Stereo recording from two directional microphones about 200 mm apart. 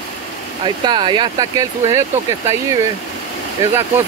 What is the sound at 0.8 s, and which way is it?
Speech, 25° right (ahead or behind).